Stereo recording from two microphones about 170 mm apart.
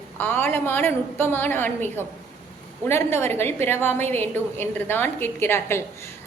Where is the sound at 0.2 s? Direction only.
10° left (ahead or behind).